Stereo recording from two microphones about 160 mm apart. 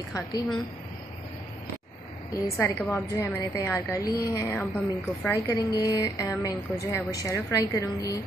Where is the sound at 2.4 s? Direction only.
20° left (ahead or behind).